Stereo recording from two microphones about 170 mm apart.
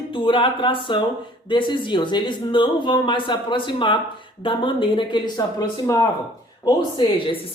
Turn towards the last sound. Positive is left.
turn(degrees=30)  # may be behind; listen again after turning